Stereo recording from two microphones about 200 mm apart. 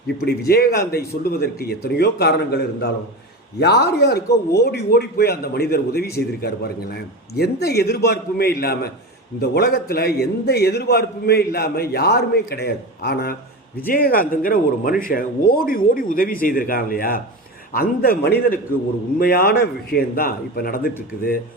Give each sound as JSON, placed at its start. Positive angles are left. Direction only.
{"t": 0.3, "sound": "a man's voice", "side_deg": 50}